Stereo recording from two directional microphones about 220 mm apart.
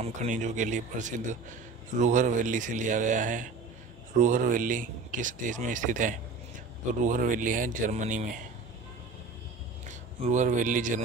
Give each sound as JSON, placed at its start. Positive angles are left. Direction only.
{"t": 0.0, "sound": "a man's voice", "side_deg": -35}
{"t": 9.8, "sound": "speech", "side_deg": -35}